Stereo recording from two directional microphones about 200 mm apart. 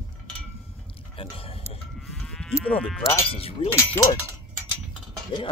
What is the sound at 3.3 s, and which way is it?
Speech, 30° left (ahead or behind).